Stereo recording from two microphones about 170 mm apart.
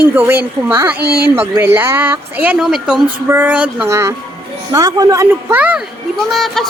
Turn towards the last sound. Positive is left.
turn(degrees=0)  # may be behind; listen again after turning